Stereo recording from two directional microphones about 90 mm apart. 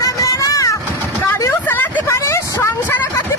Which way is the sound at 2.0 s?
35° left (ahead or behind).